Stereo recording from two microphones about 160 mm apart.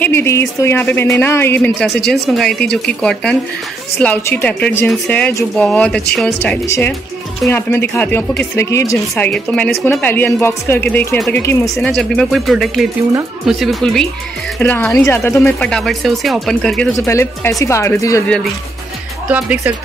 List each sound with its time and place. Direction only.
0.0 s speech: 15° left (ahead or behind)
2.0 s speech: centre (ahead or behind); by 9.3 s 20° left (ahead or behind)
9.3 s speech: 5° left (ahead or behind)
11.7 s speech: centre (ahead or behind)
14.6 s speech: 10° left (ahead or behind)
17.0 s speech: 15° left (ahead or behind)
19.2 s speech: 10° right (ahead or behind)